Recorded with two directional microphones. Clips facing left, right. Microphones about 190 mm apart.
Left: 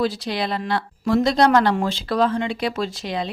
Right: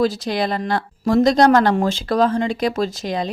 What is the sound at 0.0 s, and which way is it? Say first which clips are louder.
Speech: right 4 dB; 45° right (ahead or behind).